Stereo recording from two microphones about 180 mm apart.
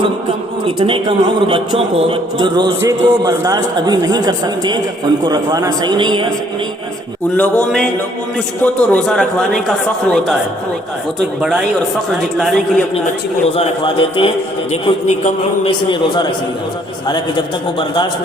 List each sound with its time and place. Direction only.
0.6 s a man's voice: 30° right (ahead or behind)
7.3 s a sound: 5° left (ahead or behind)
8.6 s speech: 5° left (ahead or behind)
13.6 s a man's voice: 30° left (ahead or behind)
15.7 s a man's voice: 25° left (ahead or behind)